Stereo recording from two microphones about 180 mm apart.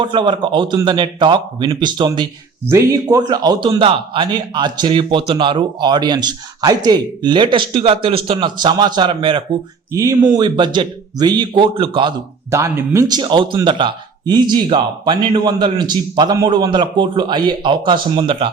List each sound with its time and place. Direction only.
0.0 s a man's voice: 25° right (ahead or behind)
9.9 s a man's voice: 15° right (ahead or behind)
12.5 s a man's voice: 15° right (ahead or behind)